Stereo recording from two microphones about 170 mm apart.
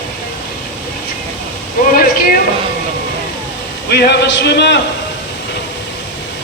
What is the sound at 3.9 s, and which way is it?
Speech, 75° left (ahead or behind).